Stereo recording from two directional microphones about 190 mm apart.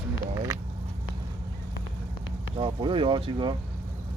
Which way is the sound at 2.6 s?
25° right (ahead or behind).